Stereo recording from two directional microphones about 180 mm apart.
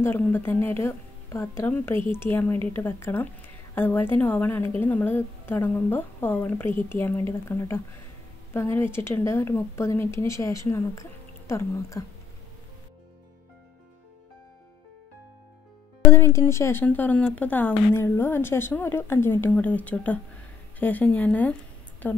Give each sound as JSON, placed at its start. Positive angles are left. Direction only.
{"t": 0.0, "sound": "speech", "side_deg": 10}
{"t": 16.1, "sound": "speech", "side_deg": 15}